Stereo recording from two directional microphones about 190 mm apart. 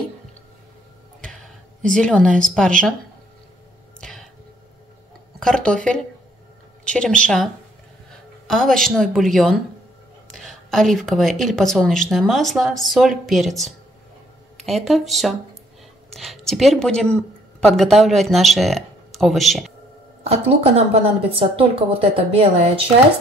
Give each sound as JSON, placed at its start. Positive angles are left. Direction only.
{"t": 1.2, "sound": "a woman's voice", "side_deg": 5}
{"t": 4.0, "sound": "a sound", "side_deg": 0}
{"t": 5.4, "sound": "a woman's voice", "side_deg": 5}
{"t": 8.5, "sound": "a woman's voice", "side_deg": 0}
{"t": 20.2, "sound": "speech", "side_deg": -30}